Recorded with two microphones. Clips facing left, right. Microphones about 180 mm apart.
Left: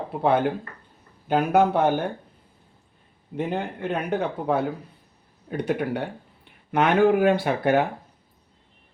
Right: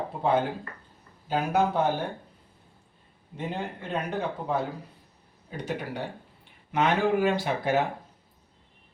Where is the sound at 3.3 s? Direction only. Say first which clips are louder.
Left 6 dB; 60° left (ahead or behind).